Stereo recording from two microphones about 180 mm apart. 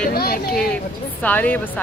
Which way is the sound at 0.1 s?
60° left (ahead or behind).